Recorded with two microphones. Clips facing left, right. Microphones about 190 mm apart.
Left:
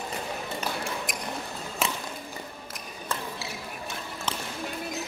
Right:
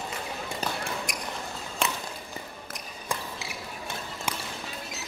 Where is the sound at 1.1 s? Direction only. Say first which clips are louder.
Left 1 dB; centre (ahead or behind).